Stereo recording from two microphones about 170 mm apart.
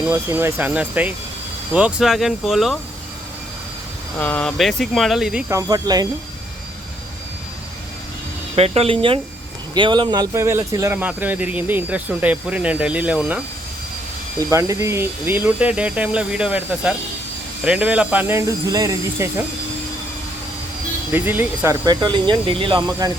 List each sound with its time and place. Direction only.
0.1 s speech: 15° right (ahead or behind)
4.2 s speech: 10° left (ahead or behind)
5.5 s speech: 20° right (ahead or behind)
8.5 s speech: 35° right (ahead or behind); by 13.4 s 10° right (ahead or behind)
14.5 s speech: 15° right (ahead or behind)
21.1 s speech: 10° right (ahead or behind)
21.8 s speech: 25° right (ahead or behind)